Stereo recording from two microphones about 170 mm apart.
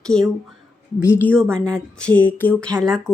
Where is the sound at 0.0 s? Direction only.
5° left (ahead or behind).